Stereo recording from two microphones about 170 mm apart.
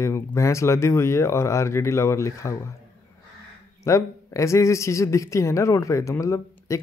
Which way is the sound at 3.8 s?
15° left (ahead or behind).